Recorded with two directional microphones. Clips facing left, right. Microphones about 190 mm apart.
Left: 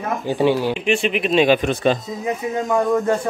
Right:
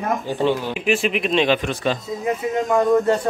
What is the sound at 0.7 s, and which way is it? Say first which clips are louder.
Speech: left 1 dB; 5° right (ahead or behind).